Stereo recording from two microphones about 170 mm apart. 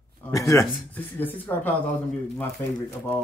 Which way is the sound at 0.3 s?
20° left (ahead or behind).